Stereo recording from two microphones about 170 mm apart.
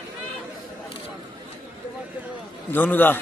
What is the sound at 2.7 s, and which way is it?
Speech, 10° left (ahead or behind).